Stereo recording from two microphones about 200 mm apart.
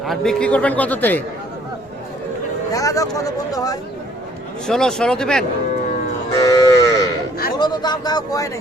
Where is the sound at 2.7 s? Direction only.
15° left (ahead or behind).